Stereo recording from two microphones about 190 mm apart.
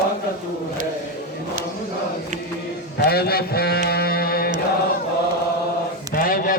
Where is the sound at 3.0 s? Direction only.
55° left (ahead or behind).